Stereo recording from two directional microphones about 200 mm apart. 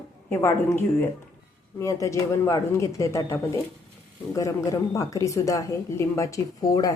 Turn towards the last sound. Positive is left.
turn(degrees=20)  # may be behind; listen again after turning